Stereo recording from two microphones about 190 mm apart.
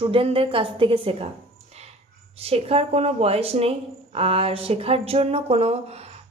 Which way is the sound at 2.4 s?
30° right (ahead or behind).